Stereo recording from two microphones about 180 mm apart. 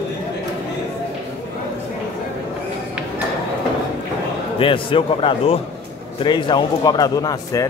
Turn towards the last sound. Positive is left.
turn(degrees=20)  # may be behind; listen again after turning